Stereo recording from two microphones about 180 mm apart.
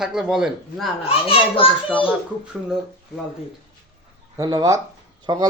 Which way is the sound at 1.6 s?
30° left (ahead or behind).